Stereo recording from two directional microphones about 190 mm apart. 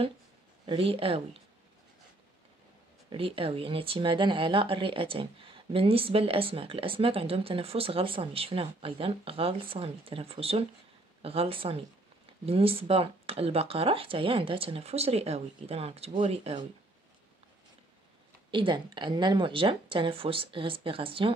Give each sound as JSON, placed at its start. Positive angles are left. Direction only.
{"t": 0.7, "sound": "speech", "side_deg": -30}
{"t": 3.1, "sound": "speech", "side_deg": -30}
{"t": 18.5, "sound": "a woman's voice", "side_deg": -25}